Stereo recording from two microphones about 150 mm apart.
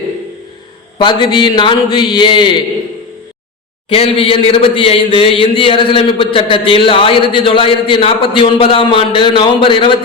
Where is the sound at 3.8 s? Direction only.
40° left (ahead or behind).